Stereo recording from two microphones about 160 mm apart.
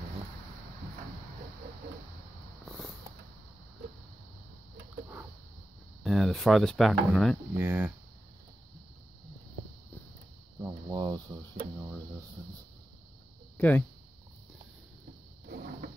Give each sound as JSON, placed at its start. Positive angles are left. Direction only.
{"t": 6.0, "sound": "speech", "side_deg": 0}
{"t": 7.5, "sound": "speech", "side_deg": -10}
{"t": 10.6, "sound": "a sound", "side_deg": -25}
{"t": 13.6, "sound": "speech", "side_deg": 10}